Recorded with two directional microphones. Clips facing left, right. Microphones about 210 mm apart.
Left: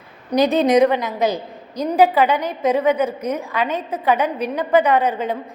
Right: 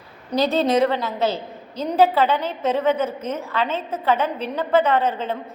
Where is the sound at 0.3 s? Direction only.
15° left (ahead or behind).